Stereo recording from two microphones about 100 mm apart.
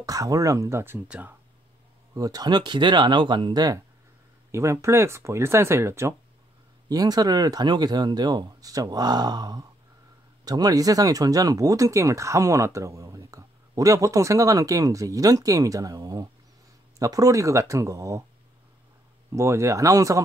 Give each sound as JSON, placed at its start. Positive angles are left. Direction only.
{"t": 0.0, "sound": "speech", "side_deg": -35}
{"t": 1.0, "sound": "speech", "side_deg": -10}
{"t": 2.1, "sound": "speech", "side_deg": -40}
{"t": 4.5, "sound": "speech", "side_deg": -30}
{"t": 6.9, "sound": "speech", "side_deg": -40}
{"t": 19.3, "sound": "speech", "side_deg": -30}